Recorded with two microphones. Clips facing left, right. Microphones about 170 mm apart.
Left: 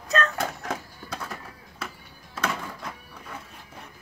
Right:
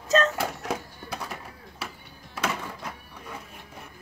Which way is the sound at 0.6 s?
10° right (ahead or behind).